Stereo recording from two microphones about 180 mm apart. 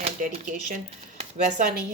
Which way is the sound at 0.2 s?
45° right (ahead or behind).